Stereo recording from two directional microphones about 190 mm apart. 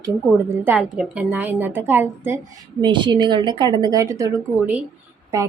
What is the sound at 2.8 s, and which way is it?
A woman's voice, 25° right (ahead or behind).